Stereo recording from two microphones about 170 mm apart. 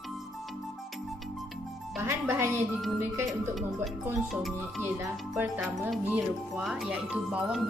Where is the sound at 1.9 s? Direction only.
15° right (ahead or behind).